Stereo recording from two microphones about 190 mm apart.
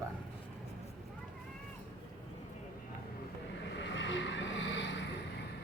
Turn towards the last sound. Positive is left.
turn(degrees=70)  # may be behind; listen again after turning